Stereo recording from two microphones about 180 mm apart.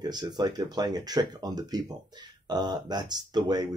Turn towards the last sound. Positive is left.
turn(degrees=-25)  # may be behind; listen again after turning